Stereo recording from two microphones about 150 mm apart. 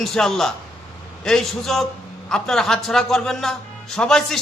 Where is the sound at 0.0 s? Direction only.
Centre (ahead or behind).